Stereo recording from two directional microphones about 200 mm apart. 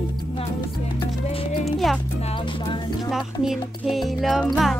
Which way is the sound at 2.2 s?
25° left (ahead or behind).